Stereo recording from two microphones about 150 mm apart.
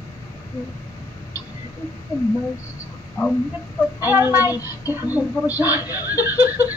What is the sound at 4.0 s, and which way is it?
Speech, 15° right (ahead or behind).